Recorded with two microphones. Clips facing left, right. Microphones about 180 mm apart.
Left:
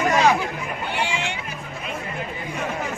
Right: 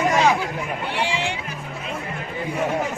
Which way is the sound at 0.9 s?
30° right (ahead or behind).